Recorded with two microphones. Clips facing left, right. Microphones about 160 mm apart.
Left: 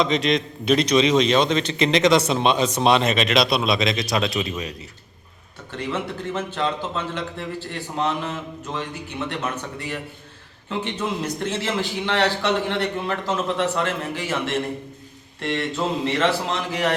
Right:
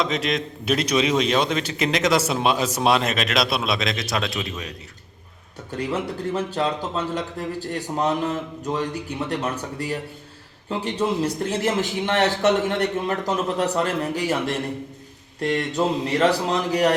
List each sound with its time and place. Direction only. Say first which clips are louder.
0.0 s a man's voice: left 3 dB; 5° right (ahead or behind)
5.7 s a man's voice: right 2 dB; 40° right (ahead or behind)
9.4 s a man's voice: right 2 dB; 35° right (ahead or behind)